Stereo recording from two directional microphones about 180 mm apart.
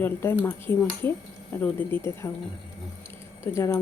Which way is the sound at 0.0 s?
10° left (ahead or behind).